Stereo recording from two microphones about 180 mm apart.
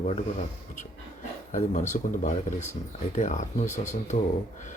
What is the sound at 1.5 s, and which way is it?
Speech, 40° left (ahead or behind).